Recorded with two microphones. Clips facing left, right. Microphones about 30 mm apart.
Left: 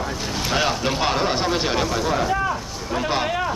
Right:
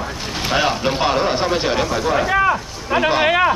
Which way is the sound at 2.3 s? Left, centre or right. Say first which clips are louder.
Right 6 dB; right.